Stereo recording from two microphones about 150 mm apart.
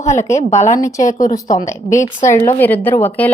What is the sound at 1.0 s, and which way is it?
Speech, 60° left (ahead or behind).